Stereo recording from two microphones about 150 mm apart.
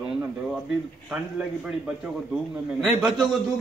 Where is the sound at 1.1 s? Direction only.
5° right (ahead or behind).